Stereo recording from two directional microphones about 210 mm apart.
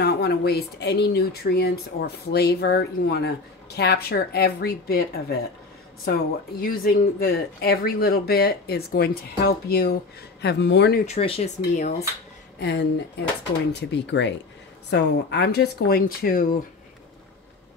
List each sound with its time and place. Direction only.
0.0 s speech: 50° left (ahead or behind)
11.1 s speech: 30° left (ahead or behind)
12.5 s speech: 55° left (ahead or behind)